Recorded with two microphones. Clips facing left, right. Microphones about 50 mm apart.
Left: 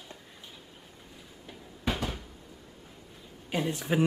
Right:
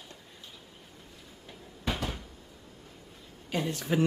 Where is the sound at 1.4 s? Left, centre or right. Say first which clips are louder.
Left 2 dB; centre.